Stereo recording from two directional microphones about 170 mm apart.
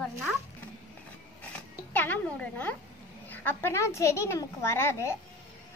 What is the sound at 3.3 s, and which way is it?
A woman's voice, 10° left (ahead or behind).